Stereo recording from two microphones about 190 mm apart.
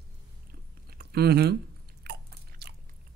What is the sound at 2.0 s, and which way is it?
Biting, 60° right (ahead or behind).